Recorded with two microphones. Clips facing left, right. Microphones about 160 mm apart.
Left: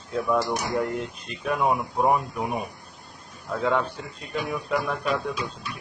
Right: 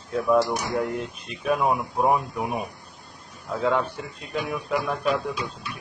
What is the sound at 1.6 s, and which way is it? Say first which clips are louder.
Speech: left 2 dB; 5° right (ahead or behind).